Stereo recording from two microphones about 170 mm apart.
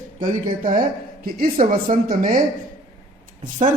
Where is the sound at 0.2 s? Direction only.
50° right (ahead or behind).